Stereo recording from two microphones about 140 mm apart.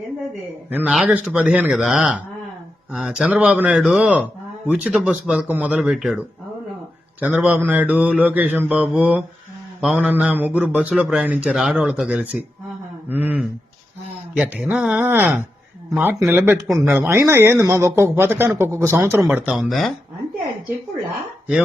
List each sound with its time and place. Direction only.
0.7 s speech: 10° right (ahead or behind)